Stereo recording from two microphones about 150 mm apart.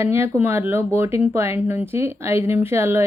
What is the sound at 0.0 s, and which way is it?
Speech, 15° right (ahead or behind).